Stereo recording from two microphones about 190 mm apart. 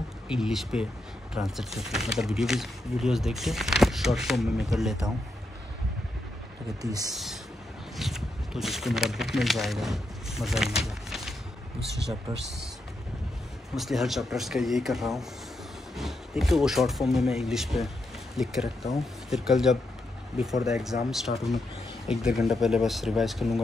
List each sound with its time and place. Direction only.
0.3 s speech: centre (ahead or behind)
6.8 s speech: 20° right (ahead or behind)
7.1 s speech: centre (ahead or behind)
13.7 s speech: centre (ahead or behind)